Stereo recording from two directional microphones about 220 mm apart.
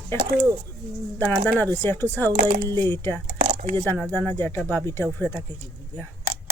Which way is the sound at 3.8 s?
5° left (ahead or behind).